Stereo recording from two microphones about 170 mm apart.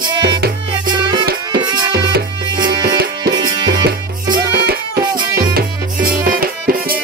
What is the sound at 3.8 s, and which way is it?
Music, 65° right (ahead or behind).